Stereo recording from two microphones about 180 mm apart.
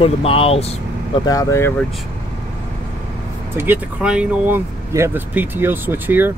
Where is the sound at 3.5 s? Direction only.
10° right (ahead or behind).